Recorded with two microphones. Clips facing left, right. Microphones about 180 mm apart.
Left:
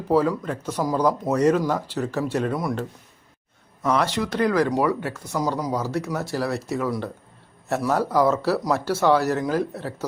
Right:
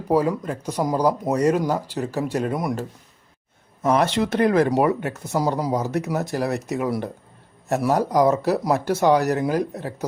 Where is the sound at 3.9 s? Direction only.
20° right (ahead or behind).